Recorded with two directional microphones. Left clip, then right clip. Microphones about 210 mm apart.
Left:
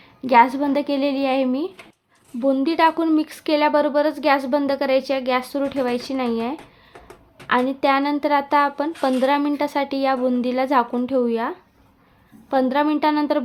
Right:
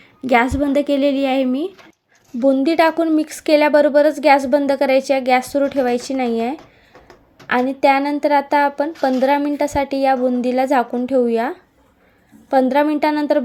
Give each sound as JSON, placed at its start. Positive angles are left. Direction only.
{"t": 0.2, "sound": "a woman's voice", "side_deg": -10}